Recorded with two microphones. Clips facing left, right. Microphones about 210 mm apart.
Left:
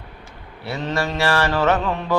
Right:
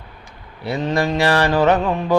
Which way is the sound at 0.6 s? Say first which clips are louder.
Right 4 dB; 15° right (ahead or behind).